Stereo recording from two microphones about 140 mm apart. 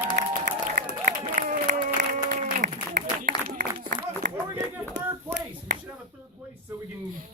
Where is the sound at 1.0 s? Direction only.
65° right (ahead or behind).